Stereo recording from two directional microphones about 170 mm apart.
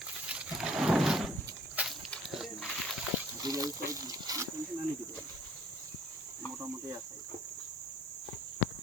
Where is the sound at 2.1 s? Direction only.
Centre (ahead or behind).